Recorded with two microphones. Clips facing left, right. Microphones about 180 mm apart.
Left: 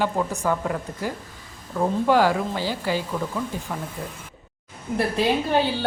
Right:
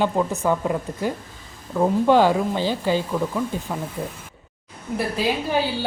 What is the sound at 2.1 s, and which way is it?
A woman's voice, 20° right (ahead or behind).